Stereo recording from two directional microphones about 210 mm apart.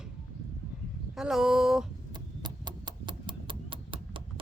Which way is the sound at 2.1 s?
20° right (ahead or behind).